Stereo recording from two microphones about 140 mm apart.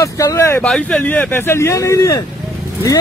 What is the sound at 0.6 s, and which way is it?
Speech, 10° left (ahead or behind).